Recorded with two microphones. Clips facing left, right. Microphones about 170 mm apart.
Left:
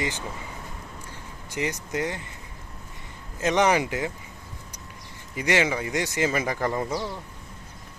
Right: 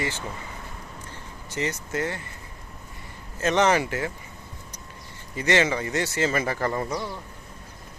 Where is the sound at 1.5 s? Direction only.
15° left (ahead or behind).